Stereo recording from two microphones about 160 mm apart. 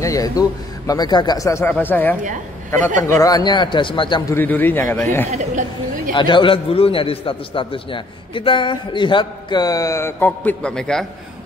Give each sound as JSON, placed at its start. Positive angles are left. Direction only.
{"t": 0.0, "sound": "a man's voice", "side_deg": 20}
{"t": 4.3, "sound": "a man's voice", "side_deg": 10}
{"t": 5.3, "sound": "speech", "side_deg": -50}
{"t": 6.1, "sound": "a man's voice", "side_deg": 30}